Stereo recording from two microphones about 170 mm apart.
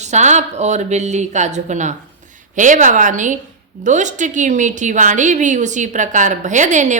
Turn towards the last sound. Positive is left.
turn(degrees=-45)  # may be behind; listen again after turning